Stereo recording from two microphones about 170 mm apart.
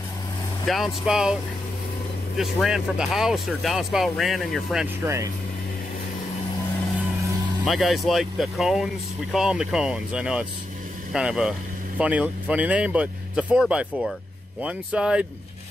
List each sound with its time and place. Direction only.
0.7 s speech: centre (ahead or behind)
5.0 s speech: 15° right (ahead or behind)
7.6 s speech: centre (ahead or behind)